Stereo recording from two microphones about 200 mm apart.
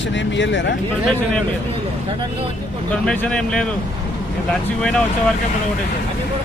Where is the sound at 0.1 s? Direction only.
65° left (ahead or behind).